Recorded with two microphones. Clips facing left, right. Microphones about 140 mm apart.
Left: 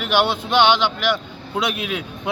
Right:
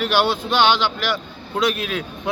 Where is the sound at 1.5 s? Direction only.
15° left (ahead or behind).